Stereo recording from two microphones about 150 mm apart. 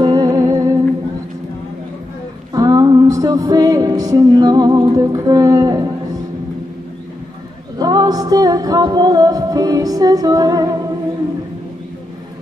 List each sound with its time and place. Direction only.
0.0 s music: 25° right (ahead or behind)
2.5 s music: 25° right (ahead or behind)
7.8 s music: 25° right (ahead or behind)